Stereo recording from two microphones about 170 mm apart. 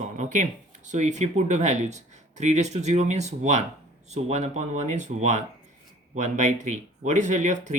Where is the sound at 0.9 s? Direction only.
45° right (ahead or behind).